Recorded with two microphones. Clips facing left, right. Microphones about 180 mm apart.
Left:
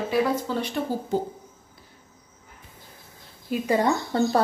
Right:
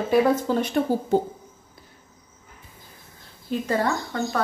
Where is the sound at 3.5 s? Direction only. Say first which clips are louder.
Left 2 dB; 15° left (ahead or behind).